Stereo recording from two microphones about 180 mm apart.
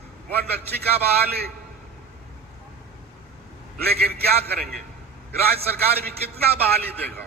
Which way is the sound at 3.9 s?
60° right (ahead or behind).